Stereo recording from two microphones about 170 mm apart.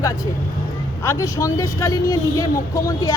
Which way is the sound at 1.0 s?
20° left (ahead or behind).